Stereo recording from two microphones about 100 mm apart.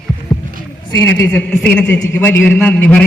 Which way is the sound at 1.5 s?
10° left (ahead or behind).